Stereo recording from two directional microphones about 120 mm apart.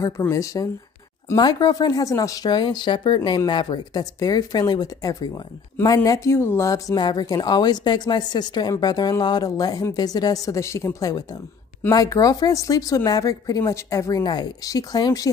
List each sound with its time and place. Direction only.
0.3 s speech: 25° left (ahead or behind)